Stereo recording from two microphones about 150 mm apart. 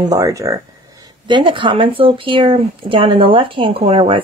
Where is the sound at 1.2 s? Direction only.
30° right (ahead or behind).